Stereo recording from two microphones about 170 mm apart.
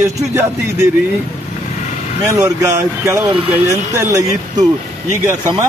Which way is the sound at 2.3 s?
20° right (ahead or behind).